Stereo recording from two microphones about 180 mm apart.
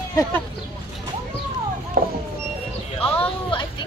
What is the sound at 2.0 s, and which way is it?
Speech, 45° right (ahead or behind).